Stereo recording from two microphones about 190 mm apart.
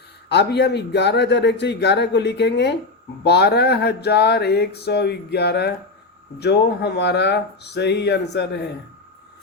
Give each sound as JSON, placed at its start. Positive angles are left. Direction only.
{"t": 0.3, "sound": "speech", "side_deg": 65}